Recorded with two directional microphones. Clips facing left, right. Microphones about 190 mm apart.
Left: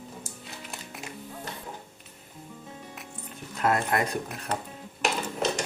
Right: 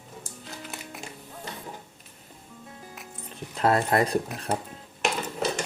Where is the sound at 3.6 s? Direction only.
35° right (ahead or behind).